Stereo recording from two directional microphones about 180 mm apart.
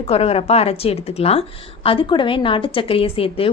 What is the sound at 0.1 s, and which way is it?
A woman's voice, 35° left (ahead or behind).